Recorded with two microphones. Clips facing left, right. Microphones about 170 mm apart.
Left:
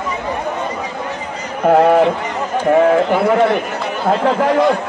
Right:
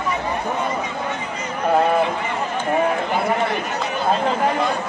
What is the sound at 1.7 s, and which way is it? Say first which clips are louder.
A man's voice: left 7 dB; 65° left (ahead or behind).